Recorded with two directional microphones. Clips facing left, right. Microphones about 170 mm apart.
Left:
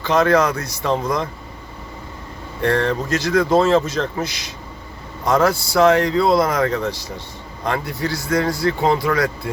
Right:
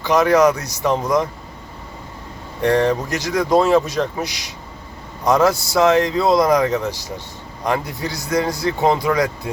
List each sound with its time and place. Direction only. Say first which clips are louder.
0.0 s speech: right 2 dB; 15° right (ahead or behind)
2.6 s speech: right 2 dB; 15° right (ahead or behind)